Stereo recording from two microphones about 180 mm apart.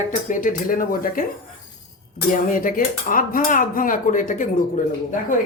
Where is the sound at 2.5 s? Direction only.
50° left (ahead or behind).